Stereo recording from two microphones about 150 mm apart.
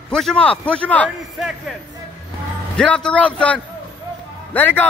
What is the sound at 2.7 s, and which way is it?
A man's voice, 5° left (ahead or behind).